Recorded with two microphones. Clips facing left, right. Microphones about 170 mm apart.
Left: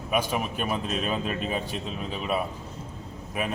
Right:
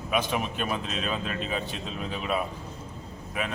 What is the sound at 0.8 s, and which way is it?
Speech, 50° left (ahead or behind).